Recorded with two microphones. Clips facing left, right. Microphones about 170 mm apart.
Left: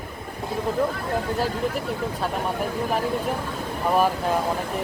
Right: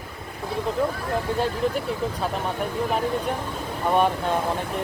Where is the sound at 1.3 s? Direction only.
Centre (ahead or behind).